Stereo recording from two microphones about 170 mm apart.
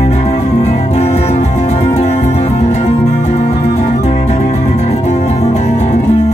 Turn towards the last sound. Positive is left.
turn(degrees=40)  # may be behind; listen again after turning